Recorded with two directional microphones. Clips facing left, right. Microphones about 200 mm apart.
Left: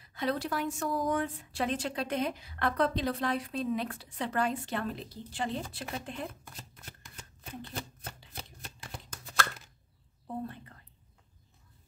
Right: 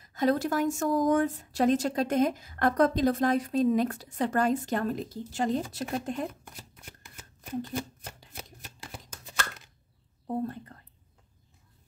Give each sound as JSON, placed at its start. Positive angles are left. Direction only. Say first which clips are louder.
{"t": 0.0, "sound": "a woman's voice", "louder": "right 7 dB", "side_deg": -45}
{"t": 9.1, "sound": "a sound", "louder": "left 3 dB", "side_deg": -10}
{"t": 10.2, "sound": "speech", "louder": "right 7 dB", "side_deg": -45}